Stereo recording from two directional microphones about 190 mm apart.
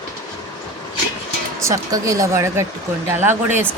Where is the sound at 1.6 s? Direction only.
15° right (ahead or behind).